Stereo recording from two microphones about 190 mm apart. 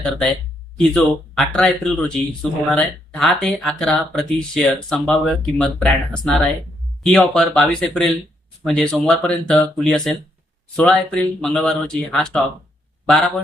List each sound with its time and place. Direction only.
0.8 s a man's voice: 5° left (ahead or behind)